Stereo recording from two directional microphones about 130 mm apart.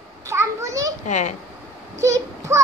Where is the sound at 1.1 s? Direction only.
65° left (ahead or behind).